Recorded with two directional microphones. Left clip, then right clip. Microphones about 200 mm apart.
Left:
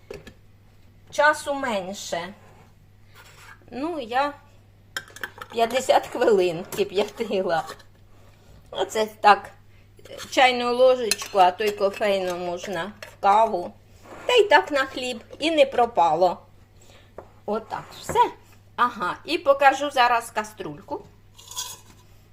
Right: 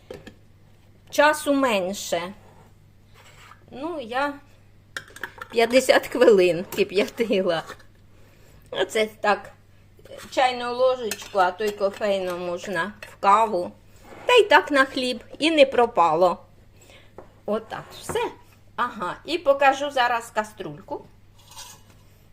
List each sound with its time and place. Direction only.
1.1 s a woman's voice: 45° right (ahead or behind)
3.7 s speech: 15° left (ahead or behind)
3.9 s a woman's voice: centre (ahead or behind)
5.5 s speech: 35° right (ahead or behind)
7.2 s speech: 90° right
8.7 s speech: 25° right (ahead or behind)
9.2 s a woman's voice: 5° right (ahead or behind)
10.1 s speech: 15° left (ahead or behind); by 16.4 s 25° right (ahead or behind)
17.4 s a woman's voice: 15° right (ahead or behind)